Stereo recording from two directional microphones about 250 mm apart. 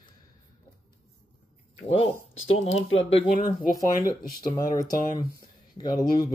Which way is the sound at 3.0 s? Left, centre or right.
Left.